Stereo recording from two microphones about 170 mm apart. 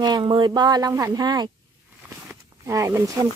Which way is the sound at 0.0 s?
25° right (ahead or behind).